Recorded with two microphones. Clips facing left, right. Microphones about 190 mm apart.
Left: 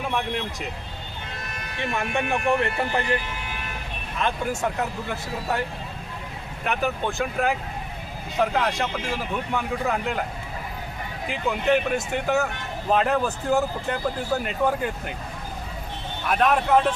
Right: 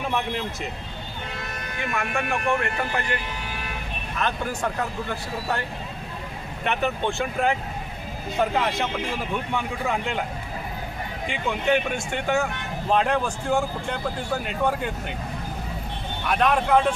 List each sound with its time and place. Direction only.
2.0 s speech: 30° left (ahead or behind)
4.2 s speech: 10° left (ahead or behind)
6.7 s speech: centre (ahead or behind)
11.3 s speech: 5° left (ahead or behind)
16.2 s speech: centre (ahead or behind)